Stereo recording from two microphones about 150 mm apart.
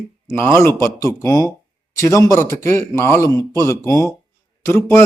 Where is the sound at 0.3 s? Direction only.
15° left (ahead or behind).